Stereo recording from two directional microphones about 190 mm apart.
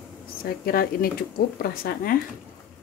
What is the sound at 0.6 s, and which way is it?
A woman's voice, 50° left (ahead or behind).